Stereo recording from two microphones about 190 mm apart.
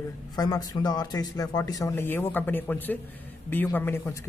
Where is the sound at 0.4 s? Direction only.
20° left (ahead or behind).